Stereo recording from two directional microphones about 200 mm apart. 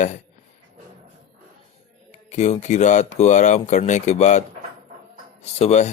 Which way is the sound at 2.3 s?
35° left (ahead or behind).